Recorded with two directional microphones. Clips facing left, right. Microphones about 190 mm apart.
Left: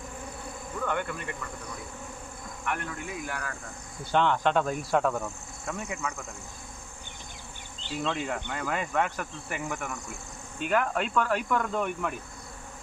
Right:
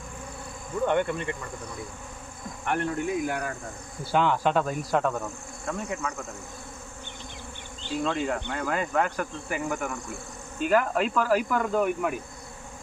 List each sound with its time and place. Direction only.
0.9 s speech: 25° right (ahead or behind)
2.6 s speech: 35° right (ahead or behind)
4.0 s speech: 5° right (ahead or behind)
8.0 s speech: centre (ahead or behind)